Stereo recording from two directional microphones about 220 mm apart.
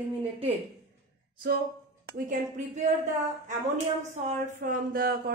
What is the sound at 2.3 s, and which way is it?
Speech, 35° right (ahead or behind).